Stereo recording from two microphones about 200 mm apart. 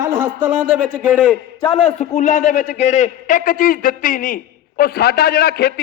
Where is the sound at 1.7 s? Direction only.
30° left (ahead or behind).